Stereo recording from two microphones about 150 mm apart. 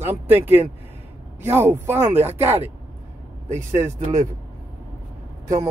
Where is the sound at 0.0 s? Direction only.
15° right (ahead or behind).